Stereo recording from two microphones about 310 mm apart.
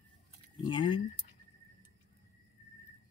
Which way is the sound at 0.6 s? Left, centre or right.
Centre.